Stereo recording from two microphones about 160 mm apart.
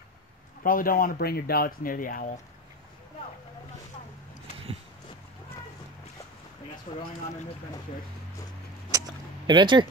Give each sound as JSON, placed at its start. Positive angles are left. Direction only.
{"t": 0.7, "sound": "speech", "side_deg": 65}
{"t": 6.9, "sound": "speech", "side_deg": 40}
{"t": 8.9, "sound": "a sound", "side_deg": -25}